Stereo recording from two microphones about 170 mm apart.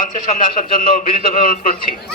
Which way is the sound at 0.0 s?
55° left (ahead or behind).